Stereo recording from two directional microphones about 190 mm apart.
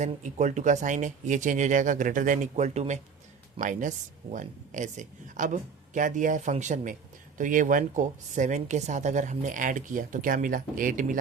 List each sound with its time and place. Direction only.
0.0 s a woman's voice: 40° right (ahead or behind)